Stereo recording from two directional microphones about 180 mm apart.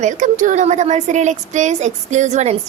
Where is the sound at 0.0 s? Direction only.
45° right (ahead or behind).